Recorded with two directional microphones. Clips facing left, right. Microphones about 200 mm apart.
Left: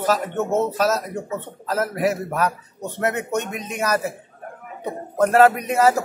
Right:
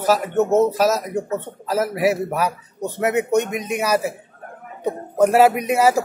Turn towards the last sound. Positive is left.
turn(degrees=-10)  # may be behind; listen again after turning